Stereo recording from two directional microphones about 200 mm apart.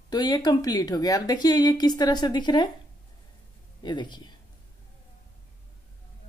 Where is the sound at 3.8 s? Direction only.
20° left (ahead or behind).